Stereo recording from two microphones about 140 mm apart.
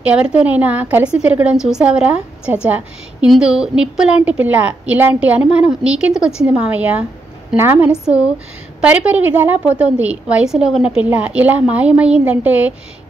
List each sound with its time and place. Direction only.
0.0 s a woman's voice: 10° right (ahead or behind)
8.0 s speech: 20° left (ahead or behind)
8.8 s a woman's voice: 10° right (ahead or behind)